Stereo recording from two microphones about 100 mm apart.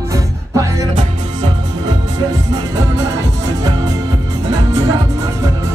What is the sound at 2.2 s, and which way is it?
Music, 35° right (ahead or behind).